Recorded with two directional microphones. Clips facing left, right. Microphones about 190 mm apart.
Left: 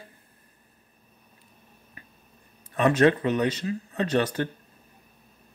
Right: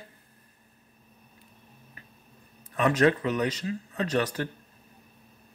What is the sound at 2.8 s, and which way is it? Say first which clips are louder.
Speech: left 3 dB; 25° left (ahead or behind).